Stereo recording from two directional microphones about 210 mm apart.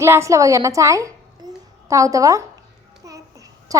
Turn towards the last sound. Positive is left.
turn(degrees=-15)  # may be behind; listen again after turning